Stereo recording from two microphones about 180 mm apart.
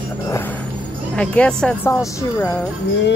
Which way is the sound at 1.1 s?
5° left (ahead or behind).